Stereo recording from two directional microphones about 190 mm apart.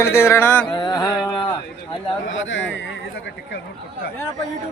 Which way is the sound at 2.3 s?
85° left.